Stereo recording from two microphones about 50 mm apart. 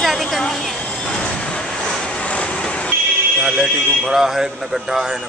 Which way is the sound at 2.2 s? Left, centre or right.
Left.